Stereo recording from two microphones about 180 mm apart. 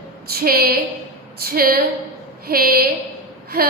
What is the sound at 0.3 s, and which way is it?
A woman's voice, 55° right (ahead or behind).